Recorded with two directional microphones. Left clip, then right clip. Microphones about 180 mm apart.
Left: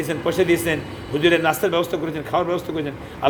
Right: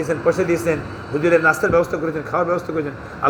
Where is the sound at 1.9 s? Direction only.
15° left (ahead or behind).